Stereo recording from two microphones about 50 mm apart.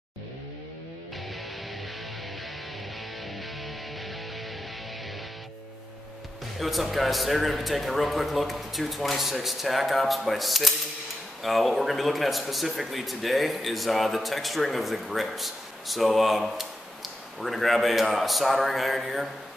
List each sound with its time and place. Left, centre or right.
6.6 s speech: centre